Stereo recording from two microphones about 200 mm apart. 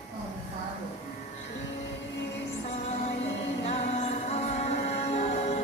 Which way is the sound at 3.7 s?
35° left (ahead or behind).